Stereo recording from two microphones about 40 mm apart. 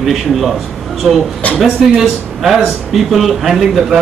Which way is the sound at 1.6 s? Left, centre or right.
Centre.